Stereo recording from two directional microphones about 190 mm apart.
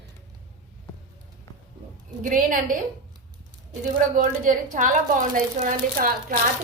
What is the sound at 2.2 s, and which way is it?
Speech, 45° right (ahead or behind).